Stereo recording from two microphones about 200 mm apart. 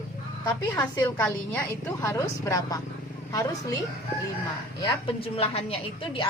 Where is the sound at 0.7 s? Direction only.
10° left (ahead or behind).